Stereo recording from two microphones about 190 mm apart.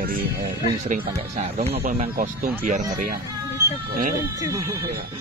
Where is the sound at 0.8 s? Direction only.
35° right (ahead or behind).